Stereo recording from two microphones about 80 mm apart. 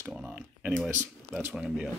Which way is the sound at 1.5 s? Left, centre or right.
Centre.